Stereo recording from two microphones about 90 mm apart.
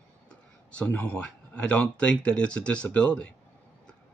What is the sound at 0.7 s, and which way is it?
Speech, 20° left (ahead or behind).